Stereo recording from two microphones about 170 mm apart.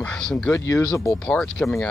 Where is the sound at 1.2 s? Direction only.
5° left (ahead or behind).